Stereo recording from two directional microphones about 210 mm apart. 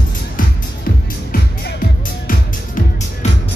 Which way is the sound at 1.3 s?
50° left (ahead or behind).